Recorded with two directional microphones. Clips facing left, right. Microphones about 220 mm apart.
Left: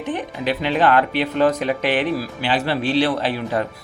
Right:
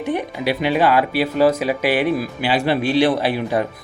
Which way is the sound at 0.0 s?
10° right (ahead or behind).